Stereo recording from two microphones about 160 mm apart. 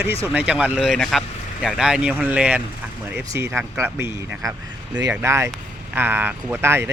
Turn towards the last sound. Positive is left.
turn(degrees=-15)  # may be behind; listen again after turning